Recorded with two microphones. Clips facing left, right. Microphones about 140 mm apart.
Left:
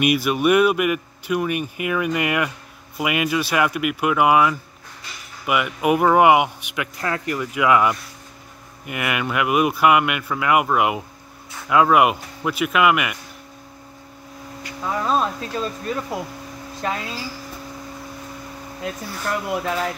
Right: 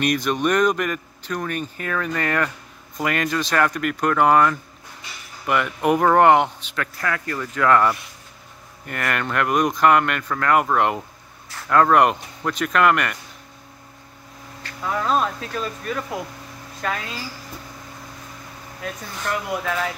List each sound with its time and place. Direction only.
0.0 s speech: 10° left (ahead or behind)
14.6 s speech: 15° left (ahead or behind)
15.5 s speech: 25° left (ahead or behind)
18.8 s speech: 5° left (ahead or behind)